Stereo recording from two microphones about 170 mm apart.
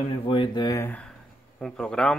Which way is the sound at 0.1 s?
30° left (ahead or behind).